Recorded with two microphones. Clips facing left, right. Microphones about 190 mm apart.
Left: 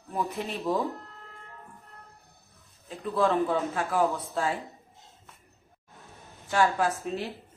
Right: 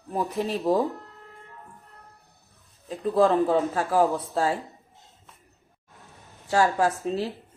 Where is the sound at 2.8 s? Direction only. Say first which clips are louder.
Right 5 dB; 35° right (ahead or behind).